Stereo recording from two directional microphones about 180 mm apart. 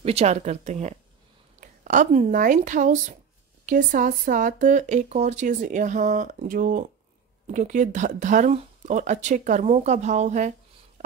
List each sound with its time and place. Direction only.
0.0 s speech: 35° right (ahead or behind)